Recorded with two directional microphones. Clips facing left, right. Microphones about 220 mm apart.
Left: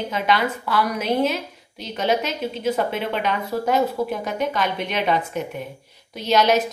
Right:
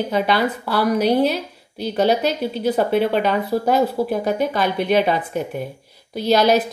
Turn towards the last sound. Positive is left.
turn(degrees=-35)  # may be behind; listen again after turning